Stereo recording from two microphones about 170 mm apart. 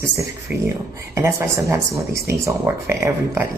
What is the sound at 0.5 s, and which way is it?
Speech, 10° right (ahead or behind).